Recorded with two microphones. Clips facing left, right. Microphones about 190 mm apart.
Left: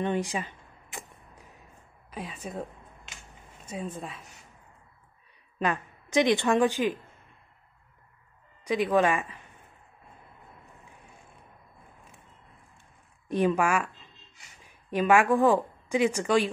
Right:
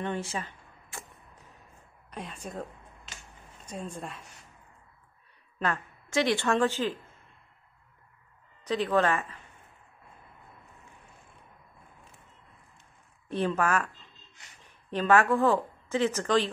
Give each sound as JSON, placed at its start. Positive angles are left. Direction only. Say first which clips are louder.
{"t": 0.0, "sound": "speech", "louder": "left 4 dB", "side_deg": 15}
{"t": 2.0, "sound": "speech", "louder": "left 2 dB", "side_deg": 5}
{"t": 3.6, "sound": "a woman's voice", "louder": "left 2 dB", "side_deg": 5}
{"t": 5.6, "sound": "a woman's voice", "louder": "left 2 dB", "side_deg": 15}
{"t": 8.6, "sound": "speech", "louder": "left 2 dB", "side_deg": 10}
{"t": 13.3, "sound": "a woman's voice", "louder": "left 3 dB", "side_deg": 15}